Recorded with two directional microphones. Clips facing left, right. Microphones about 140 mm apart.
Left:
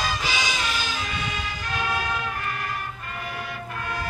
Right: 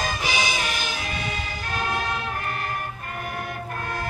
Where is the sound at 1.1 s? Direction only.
45° right (ahead or behind).